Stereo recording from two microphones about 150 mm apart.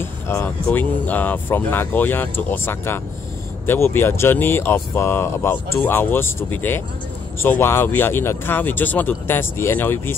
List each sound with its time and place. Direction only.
0.0 s speech: 15° left (ahead or behind)